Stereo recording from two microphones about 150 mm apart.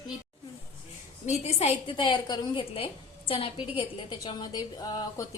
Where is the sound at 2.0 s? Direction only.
30° left (ahead or behind).